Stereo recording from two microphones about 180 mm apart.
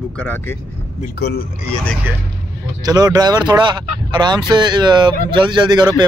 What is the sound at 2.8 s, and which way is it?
Speech, 20° right (ahead or behind).